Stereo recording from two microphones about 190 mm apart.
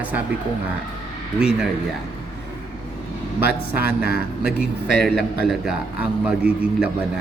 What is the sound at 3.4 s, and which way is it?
A man's voice, 55° left (ahead or behind).